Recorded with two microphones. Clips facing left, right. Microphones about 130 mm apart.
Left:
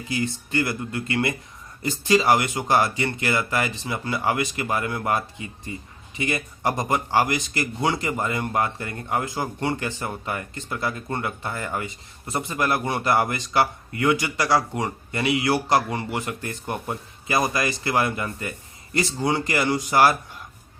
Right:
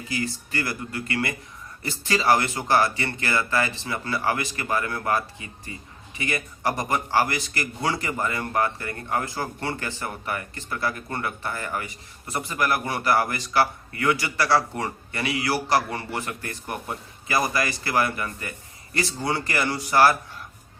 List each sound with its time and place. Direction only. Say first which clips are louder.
0.1 s a man's voice: left 4 dB; 20° left (ahead or behind)